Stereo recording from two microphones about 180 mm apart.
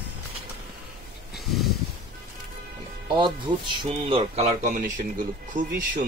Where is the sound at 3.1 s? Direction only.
25° right (ahead or behind).